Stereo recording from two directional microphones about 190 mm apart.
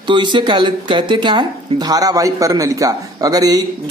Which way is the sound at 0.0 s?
25° right (ahead or behind).